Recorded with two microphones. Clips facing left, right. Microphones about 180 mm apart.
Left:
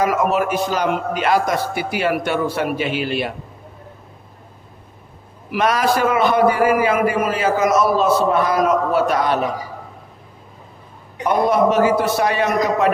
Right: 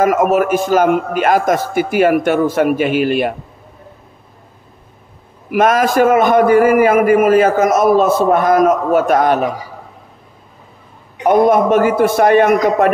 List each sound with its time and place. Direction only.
0.0 s a man's voice: 50° right (ahead or behind)
5.5 s a man's voice: 50° right (ahead or behind)
11.2 s a man's voice: 50° right (ahead or behind)